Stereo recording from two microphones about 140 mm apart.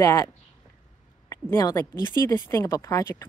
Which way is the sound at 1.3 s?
20° left (ahead or behind).